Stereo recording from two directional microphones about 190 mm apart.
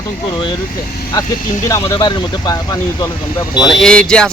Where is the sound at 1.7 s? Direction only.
15° left (ahead or behind).